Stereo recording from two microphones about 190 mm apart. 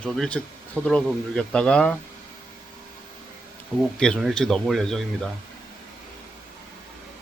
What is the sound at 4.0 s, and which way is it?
Speech, 5° left (ahead or behind).